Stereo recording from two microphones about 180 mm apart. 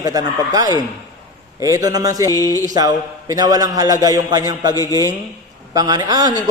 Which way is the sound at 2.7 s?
20° right (ahead or behind).